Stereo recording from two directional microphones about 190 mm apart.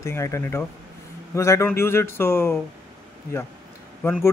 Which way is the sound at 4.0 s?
5° left (ahead or behind).